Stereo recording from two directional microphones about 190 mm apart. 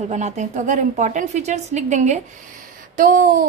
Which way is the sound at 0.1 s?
40° right (ahead or behind).